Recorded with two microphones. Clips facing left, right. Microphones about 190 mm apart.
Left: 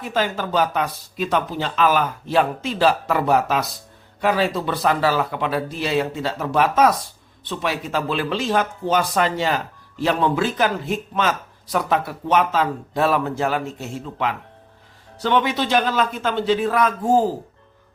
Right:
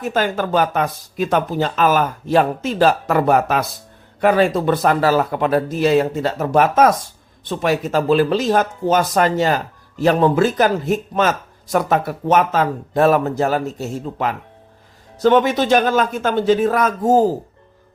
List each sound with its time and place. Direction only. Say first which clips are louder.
0.0 s speech: right 4 dB; 50° right (ahead or behind)